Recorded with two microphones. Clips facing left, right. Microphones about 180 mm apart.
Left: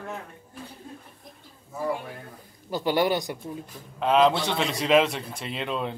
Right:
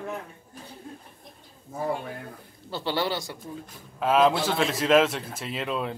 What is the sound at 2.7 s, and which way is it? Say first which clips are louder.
Speech: left 4 dB; 15° left (ahead or behind).